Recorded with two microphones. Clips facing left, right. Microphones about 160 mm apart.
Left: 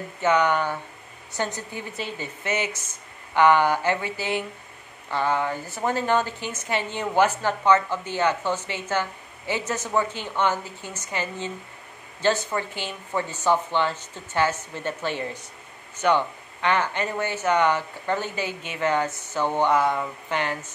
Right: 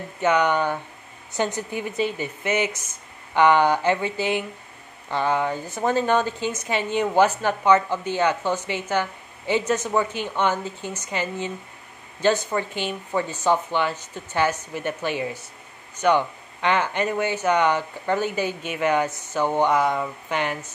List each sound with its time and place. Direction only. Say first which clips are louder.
0.2 s a woman's voice: right 1 dB; 15° right (ahead or behind)
3.3 s a sound: right 1 dB; 20° right (ahead or behind)
5.1 s a woman's voice: right 2 dB; 15° right (ahead or behind)